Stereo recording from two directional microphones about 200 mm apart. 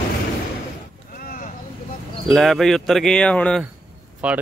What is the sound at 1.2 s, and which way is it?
Vehicle, 45° left (ahead or behind).